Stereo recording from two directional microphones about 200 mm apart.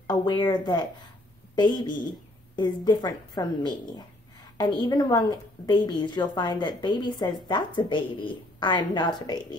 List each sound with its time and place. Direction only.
0.0 s a woman's voice: 20° left (ahead or behind)